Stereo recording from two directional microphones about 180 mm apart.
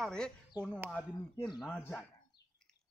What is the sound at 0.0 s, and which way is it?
Speech, 5° left (ahead or behind).